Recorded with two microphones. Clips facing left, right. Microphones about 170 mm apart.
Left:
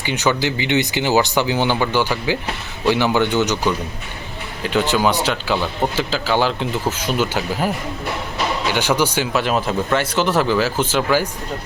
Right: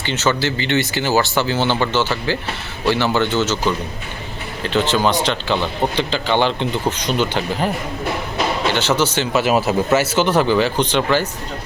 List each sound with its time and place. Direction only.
0.0 s speech: 15° left (ahead or behind)
9.3 s speech: 5° right (ahead or behind)